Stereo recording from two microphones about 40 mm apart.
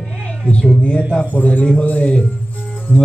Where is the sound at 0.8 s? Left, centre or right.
Left.